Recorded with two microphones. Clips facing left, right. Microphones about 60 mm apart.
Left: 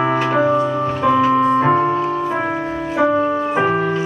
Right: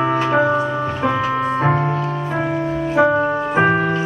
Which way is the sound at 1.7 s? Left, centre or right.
Centre.